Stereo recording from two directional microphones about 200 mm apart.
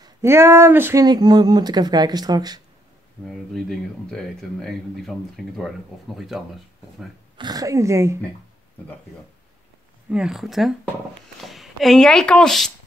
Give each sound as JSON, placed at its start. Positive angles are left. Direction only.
{"t": 0.0, "sound": "speech", "side_deg": -15}
{"t": 3.3, "sound": "speech", "side_deg": 0}
{"t": 7.3, "sound": "speech", "side_deg": -20}
{"t": 10.1, "sound": "speech", "side_deg": -5}